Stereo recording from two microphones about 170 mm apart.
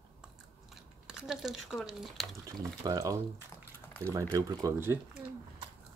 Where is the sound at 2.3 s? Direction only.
20° right (ahead or behind).